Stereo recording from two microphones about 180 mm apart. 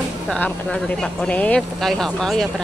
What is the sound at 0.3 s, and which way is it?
Speech, 5° left (ahead or behind).